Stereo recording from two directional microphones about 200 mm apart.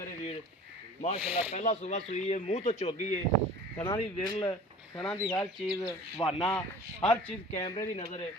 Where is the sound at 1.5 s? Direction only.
35° left (ahead or behind).